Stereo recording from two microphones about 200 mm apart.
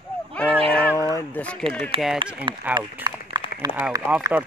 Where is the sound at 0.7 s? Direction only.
5° left (ahead or behind).